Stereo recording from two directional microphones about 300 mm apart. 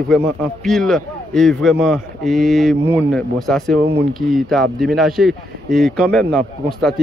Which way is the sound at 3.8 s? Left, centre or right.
Right.